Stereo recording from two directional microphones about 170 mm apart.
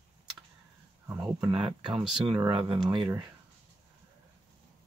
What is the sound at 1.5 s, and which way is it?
Speech, 30° right (ahead or behind).